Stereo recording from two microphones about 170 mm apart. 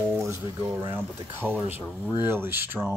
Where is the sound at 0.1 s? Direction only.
15° right (ahead or behind).